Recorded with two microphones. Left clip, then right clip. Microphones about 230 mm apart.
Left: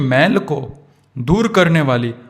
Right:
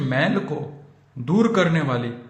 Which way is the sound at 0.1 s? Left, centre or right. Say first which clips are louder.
Left 8 dB; left.